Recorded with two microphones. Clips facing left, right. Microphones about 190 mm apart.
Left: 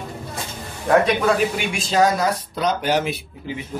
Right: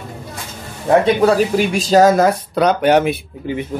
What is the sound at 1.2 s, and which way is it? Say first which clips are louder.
Speech: right 6 dB; 35° right (ahead or behind).